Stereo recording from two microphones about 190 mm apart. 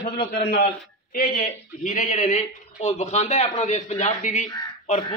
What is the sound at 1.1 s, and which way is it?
Speech, 45° left (ahead or behind).